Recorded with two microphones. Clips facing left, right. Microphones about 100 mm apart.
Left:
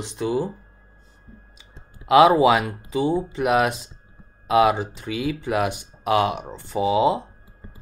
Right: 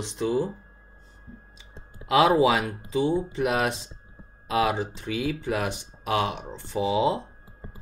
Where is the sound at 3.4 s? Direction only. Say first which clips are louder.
Left 5 dB; 60° left (ahead or behind).